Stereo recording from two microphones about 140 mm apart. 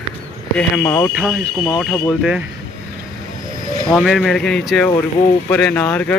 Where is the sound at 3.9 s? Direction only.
Centre (ahead or behind).